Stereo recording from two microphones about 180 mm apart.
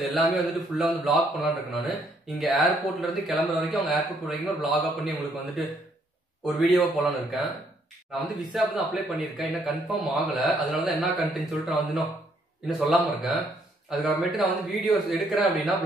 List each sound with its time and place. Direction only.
0.1 s speech: centre (ahead or behind)